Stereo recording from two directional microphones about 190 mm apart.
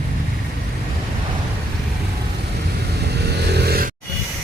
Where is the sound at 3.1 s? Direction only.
60° right (ahead or behind).